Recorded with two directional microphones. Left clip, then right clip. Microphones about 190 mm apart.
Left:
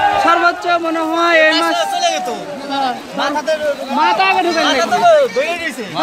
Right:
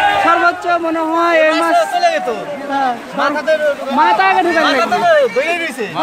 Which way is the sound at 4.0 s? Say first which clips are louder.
Right 2 dB; 15° right (ahead or behind).